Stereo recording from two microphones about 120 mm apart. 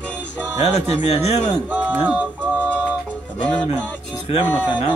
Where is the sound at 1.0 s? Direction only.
65° left (ahead or behind).